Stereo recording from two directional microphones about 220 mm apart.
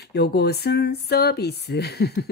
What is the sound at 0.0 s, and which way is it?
Speech, 50° left (ahead or behind).